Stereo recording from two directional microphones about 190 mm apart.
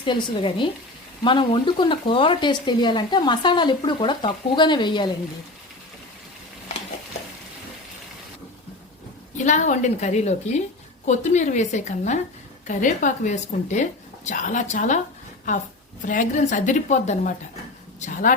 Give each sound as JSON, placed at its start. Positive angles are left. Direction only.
{"t": 0.0, "sound": "speech", "side_deg": 25}
{"t": 9.4, "sound": "a woman's voice", "side_deg": 40}